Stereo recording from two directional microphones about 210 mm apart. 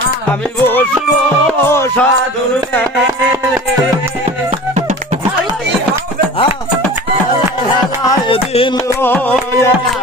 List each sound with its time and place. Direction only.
1.7 s music: 10° left (ahead or behind)
8.1 s music: 25° left (ahead or behind)
9.0 s music: 10° left (ahead or behind)